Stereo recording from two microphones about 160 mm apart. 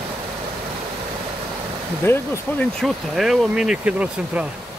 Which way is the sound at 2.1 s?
15° left (ahead or behind).